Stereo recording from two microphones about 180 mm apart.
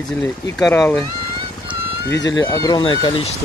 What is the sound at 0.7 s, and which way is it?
Speech, 10° left (ahead or behind).